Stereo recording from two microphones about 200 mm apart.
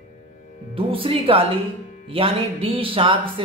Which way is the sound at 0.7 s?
25° right (ahead or behind).